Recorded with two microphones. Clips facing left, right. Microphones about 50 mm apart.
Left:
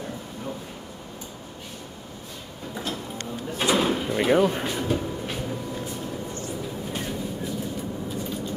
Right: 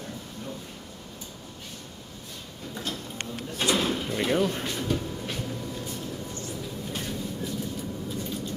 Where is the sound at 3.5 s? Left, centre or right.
Centre.